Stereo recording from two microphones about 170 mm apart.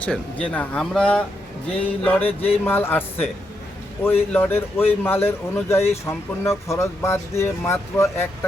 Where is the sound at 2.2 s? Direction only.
35° left (ahead or behind).